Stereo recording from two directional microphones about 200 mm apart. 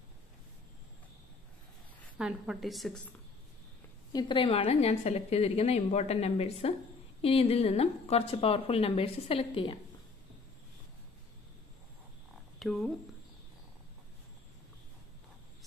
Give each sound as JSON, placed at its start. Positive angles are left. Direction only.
{"t": 2.1, "sound": "a woman's voice", "side_deg": -5}
{"t": 4.1, "sound": "a woman's voice", "side_deg": 20}
{"t": 12.5, "sound": "speech", "side_deg": 0}